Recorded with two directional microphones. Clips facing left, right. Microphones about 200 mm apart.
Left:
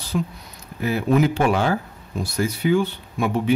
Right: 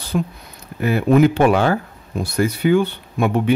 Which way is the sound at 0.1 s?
55° right (ahead or behind).